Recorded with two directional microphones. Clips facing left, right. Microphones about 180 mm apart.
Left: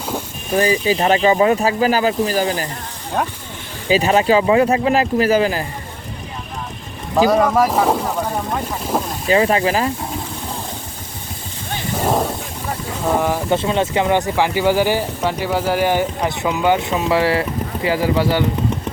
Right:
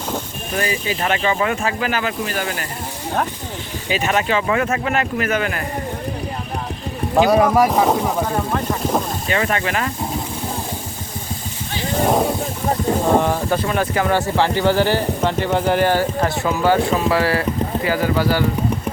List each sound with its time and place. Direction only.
0.5 s speech: 35° left (ahead or behind)
3.8 s speech: 35° left (ahead or behind)
7.3 s speech: 5° right (ahead or behind)
9.3 s speech: 30° left (ahead or behind)
13.1 s speech: 5° left (ahead or behind)
13.5 s speech: 25° left (ahead or behind)